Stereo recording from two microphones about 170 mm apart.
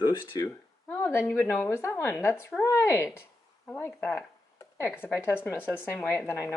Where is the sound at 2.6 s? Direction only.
15° left (ahead or behind).